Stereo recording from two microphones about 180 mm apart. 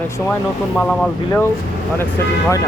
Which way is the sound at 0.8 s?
10° left (ahead or behind).